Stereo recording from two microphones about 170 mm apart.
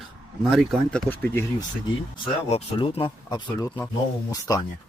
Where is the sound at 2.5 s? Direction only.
35° left (ahead or behind).